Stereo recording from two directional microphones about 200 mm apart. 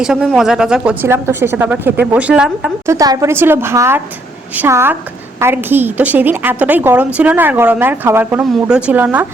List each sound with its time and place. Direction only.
0.0 s a woman's voice: 5° right (ahead or behind)
2.8 s a woman's voice: 15° right (ahead or behind)